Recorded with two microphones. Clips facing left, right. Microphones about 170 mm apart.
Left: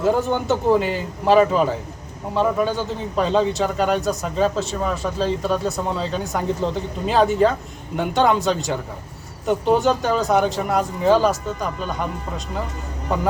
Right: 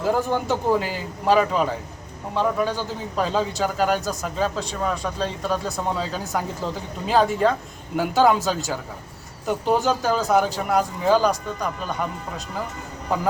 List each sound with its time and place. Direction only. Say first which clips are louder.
0.0 s a man's voice: left 3 dB; centre (ahead or behind)